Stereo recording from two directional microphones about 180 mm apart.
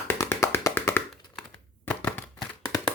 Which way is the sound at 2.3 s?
15° left (ahead or behind).